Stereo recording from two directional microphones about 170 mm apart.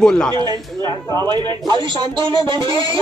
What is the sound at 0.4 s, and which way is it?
Speech, 25° right (ahead or behind).